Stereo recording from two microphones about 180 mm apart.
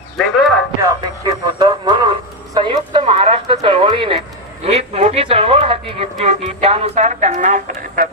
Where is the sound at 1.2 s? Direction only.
20° right (ahead or behind).